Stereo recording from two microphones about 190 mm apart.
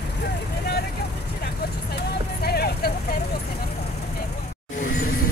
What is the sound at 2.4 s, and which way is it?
Vehicle, 55° left (ahead or behind).